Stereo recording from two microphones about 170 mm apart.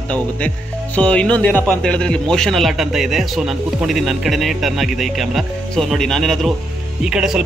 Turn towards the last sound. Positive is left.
turn(degrees=-5)  # may be behind; listen again after turning